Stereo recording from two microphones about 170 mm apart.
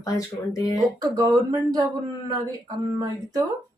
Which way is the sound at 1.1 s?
20° right (ahead or behind).